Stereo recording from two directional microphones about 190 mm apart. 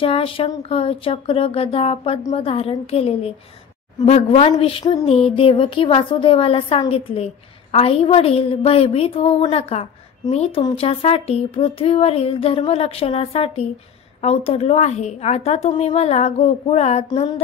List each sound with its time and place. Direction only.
0.0 s speech: 30° left (ahead or behind)